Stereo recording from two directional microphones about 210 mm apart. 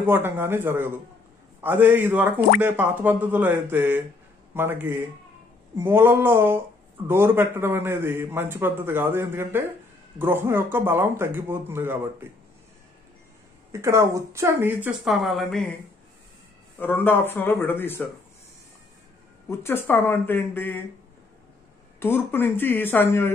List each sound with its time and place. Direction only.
0.0 s a man's voice: 10° right (ahead or behind)
13.7 s a man's voice: 15° right (ahead or behind)
16.8 s speech: 10° left (ahead or behind)
19.6 s speech: 10° left (ahead or behind)
22.0 s speech: 10° left (ahead or behind)